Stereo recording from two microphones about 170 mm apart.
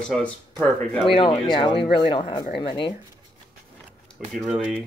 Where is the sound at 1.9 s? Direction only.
30° left (ahead or behind).